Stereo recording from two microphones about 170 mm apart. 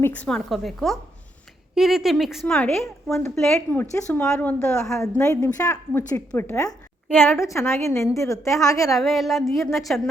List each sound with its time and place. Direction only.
0.0 s a woman's voice: 10° left (ahead or behind)
4.9 s a woman's voice: 15° left (ahead or behind)
9.0 s a woman's voice: centre (ahead or behind)